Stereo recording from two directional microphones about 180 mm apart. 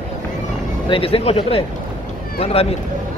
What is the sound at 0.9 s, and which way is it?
Speech, 30° left (ahead or behind).